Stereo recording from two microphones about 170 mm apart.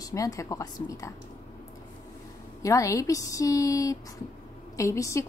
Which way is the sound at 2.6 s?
20° left (ahead or behind).